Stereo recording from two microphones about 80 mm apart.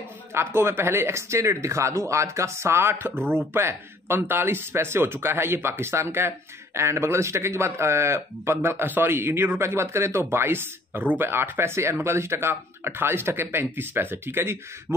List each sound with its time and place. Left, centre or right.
0.3 s speech: right